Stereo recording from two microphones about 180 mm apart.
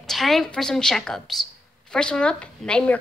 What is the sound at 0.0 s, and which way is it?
A woman's voice, centre (ahead or behind).